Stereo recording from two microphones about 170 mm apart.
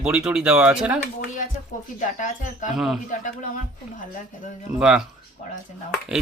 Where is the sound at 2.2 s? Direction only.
50° left (ahead or behind).